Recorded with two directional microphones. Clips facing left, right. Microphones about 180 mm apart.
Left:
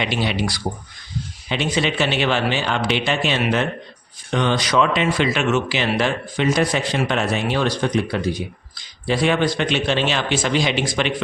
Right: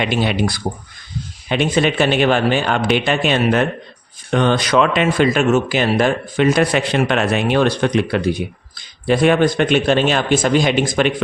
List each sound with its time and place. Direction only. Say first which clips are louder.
0.0 s speech: right 4 dB; 50° right (ahead or behind)